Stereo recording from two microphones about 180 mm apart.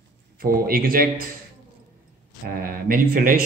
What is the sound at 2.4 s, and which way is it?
Speech, 55° right (ahead or behind).